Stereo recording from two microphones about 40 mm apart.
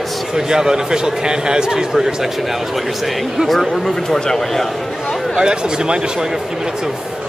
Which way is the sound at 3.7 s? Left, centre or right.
Centre.